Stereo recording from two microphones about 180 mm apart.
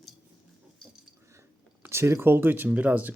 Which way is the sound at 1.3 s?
15° right (ahead or behind).